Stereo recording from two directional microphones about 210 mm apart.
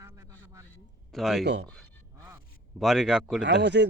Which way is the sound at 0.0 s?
15° right (ahead or behind).